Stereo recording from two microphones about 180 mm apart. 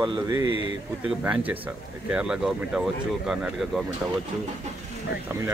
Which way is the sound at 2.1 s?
5° right (ahead or behind).